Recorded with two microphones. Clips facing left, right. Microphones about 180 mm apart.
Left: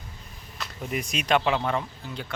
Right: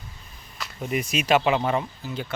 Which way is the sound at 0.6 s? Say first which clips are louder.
Right 3 dB; centre (ahead or behind).